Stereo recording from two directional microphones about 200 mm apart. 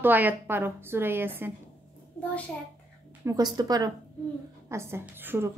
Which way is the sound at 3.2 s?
20° right (ahead or behind).